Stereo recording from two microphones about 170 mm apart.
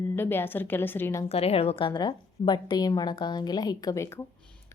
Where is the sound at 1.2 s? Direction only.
35° left (ahead or behind); by 4.2 s 15° left (ahead or behind).